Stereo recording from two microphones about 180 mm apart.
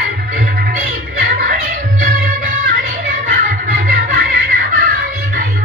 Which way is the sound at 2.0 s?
55° right (ahead or behind).